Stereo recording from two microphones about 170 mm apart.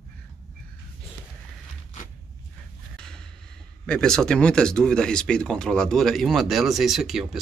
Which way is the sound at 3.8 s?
5° left (ahead or behind).